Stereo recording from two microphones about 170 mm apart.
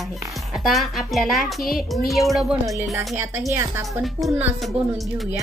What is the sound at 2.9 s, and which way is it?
Speech, 15° right (ahead or behind).